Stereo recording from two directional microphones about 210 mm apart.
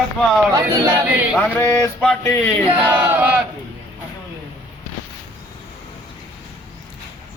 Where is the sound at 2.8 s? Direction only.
10° right (ahead or behind).